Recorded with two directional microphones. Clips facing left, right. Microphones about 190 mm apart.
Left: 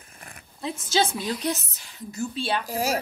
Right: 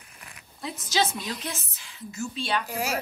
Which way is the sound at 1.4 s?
40° left (ahead or behind).